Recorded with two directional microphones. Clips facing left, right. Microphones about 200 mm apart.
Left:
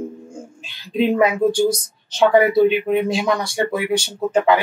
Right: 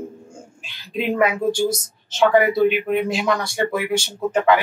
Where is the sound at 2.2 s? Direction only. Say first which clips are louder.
Left 2 dB; 20° left (ahead or behind).